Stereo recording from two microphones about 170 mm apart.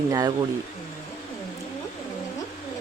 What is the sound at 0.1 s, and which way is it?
Speech, 20° right (ahead or behind).